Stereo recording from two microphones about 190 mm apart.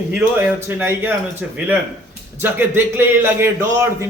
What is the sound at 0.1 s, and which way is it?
A man's voice, 10° right (ahead or behind).